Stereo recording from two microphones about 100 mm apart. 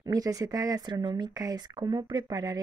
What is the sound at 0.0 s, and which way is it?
Speech, 40° right (ahead or behind).